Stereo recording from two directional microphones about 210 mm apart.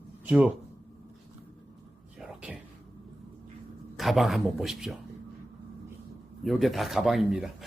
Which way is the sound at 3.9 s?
Centre (ahead or behind).